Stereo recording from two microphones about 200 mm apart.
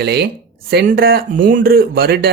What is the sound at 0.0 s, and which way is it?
Speech, 55° right (ahead or behind).